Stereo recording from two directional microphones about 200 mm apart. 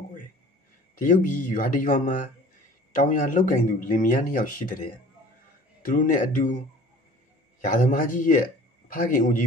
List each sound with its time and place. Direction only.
0.9 s speech: 40° left (ahead or behind)
5.8 s speech: 40° left (ahead or behind)
7.6 s a man's voice: 40° left (ahead or behind)